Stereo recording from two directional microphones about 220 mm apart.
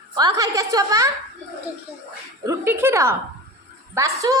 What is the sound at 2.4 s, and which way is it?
A woman's voice, 15° right (ahead or behind).